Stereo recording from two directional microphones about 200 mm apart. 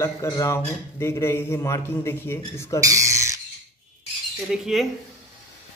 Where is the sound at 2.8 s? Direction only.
15° right (ahead or behind).